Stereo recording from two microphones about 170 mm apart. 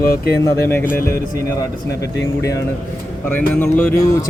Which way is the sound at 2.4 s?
15° left (ahead or behind).